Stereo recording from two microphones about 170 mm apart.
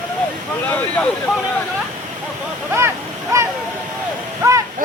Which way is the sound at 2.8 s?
15° right (ahead or behind).